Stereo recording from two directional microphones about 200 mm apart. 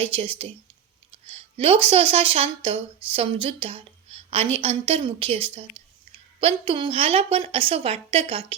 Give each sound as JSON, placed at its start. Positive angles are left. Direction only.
{"t": 0.0, "sound": "speech", "side_deg": -30}